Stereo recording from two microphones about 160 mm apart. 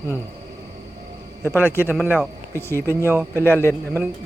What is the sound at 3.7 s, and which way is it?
Speech, 10° right (ahead or behind).